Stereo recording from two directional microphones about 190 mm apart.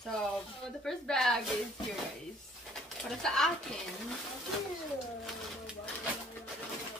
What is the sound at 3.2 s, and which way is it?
Speech, 5° left (ahead or behind).